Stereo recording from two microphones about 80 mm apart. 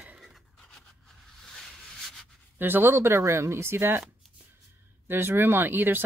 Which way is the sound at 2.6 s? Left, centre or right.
Right.